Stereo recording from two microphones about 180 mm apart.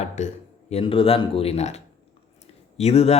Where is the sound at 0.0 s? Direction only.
40° left (ahead or behind).